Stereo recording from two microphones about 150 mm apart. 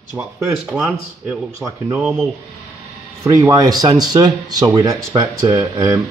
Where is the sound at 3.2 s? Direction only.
20° right (ahead or behind).